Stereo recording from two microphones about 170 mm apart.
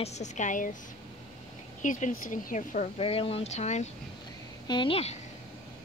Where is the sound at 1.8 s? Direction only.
50° left (ahead or behind).